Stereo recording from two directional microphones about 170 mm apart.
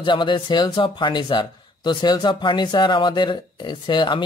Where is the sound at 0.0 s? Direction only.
30° left (ahead or behind).